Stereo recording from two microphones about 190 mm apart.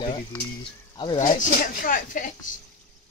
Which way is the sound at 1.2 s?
45° left (ahead or behind).